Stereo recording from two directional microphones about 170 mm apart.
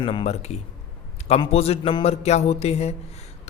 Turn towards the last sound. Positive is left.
turn(degrees=40)  # may be behind; listen again after turning